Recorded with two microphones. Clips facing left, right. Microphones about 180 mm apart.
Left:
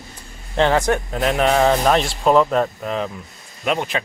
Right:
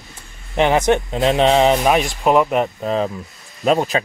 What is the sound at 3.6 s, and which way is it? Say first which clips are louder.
Speech: right 5 dB; 40° right (ahead or behind).